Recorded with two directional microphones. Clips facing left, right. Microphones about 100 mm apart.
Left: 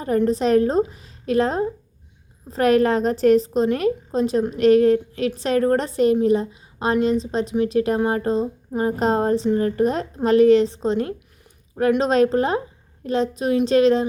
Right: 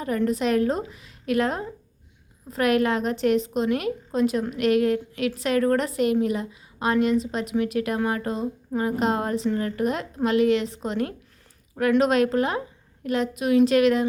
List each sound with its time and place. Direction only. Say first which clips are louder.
0.3 s a woman's voice: left 3 dB; 35° left (ahead or behind)